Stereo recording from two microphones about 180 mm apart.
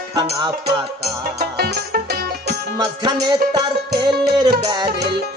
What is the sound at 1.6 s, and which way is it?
Music, 60° right (ahead or behind).